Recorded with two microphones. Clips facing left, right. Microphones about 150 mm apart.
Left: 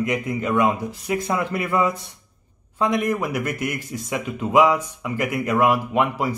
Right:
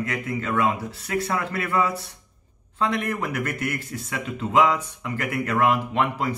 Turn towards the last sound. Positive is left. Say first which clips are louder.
# left 3 dB
turn(degrees=10)  # may be behind; listen again after turning